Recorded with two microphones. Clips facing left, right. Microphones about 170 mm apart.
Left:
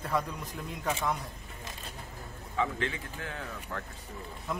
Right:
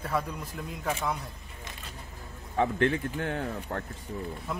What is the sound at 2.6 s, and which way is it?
Speech, 55° right (ahead or behind).